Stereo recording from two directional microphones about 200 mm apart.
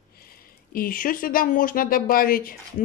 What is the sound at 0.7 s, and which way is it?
A woman's voice, 45° left (ahead or behind).